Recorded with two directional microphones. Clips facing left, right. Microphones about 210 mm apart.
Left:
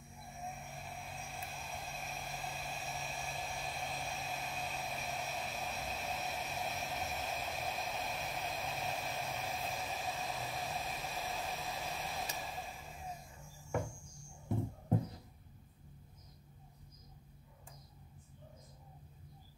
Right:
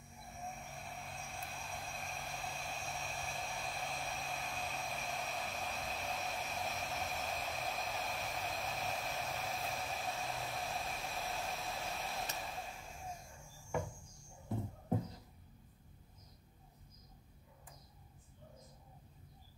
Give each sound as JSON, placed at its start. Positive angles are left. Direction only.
{"t": 0.3, "sound": "vehicle", "side_deg": 0}